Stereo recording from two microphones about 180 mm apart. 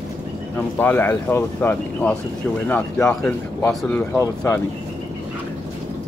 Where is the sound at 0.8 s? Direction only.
10° left (ahead or behind).